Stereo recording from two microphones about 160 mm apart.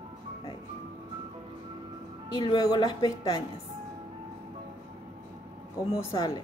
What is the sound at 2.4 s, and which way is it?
Speech, 25° left (ahead or behind).